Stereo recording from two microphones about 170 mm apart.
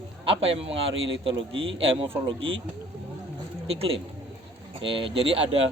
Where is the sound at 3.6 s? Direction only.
35° right (ahead or behind).